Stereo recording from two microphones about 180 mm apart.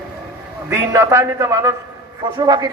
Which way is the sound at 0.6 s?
15° right (ahead or behind).